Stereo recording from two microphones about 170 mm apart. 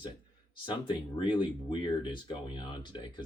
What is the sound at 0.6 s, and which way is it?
Speech, 25° left (ahead or behind).